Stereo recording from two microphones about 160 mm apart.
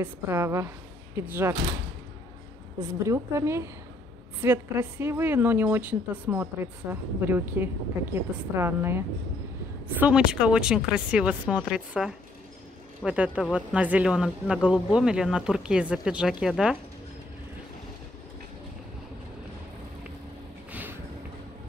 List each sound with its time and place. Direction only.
0.0 s a woman's voice: 15° right (ahead or behind)
2.8 s a woman's voice: 20° right (ahead or behind); by 16.7 s 5° right (ahead or behind)